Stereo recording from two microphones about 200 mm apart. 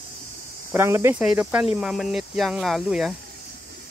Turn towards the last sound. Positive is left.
turn(degrees=0)  # may be behind; listen again after turning